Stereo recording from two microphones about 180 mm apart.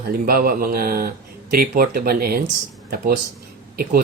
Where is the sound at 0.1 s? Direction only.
55° right (ahead or behind).